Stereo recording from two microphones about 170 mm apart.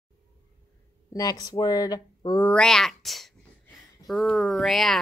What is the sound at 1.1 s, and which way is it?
Speech, 20° left (ahead or behind).